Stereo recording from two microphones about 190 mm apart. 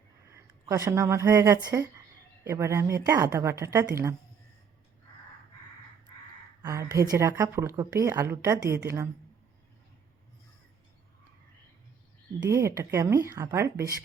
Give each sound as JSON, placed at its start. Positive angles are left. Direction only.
{"t": 0.3, "sound": "a woman's voice", "side_deg": -15}
{"t": 6.6, "sound": "a woman's voice", "side_deg": -20}
{"t": 12.4, "sound": "a woman's voice", "side_deg": -15}